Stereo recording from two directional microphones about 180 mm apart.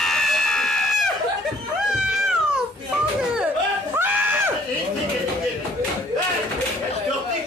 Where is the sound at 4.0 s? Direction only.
10° right (ahead or behind).